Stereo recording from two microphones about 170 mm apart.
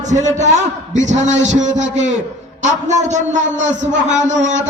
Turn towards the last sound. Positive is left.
turn(degrees=-45)  # may be behind; listen again after turning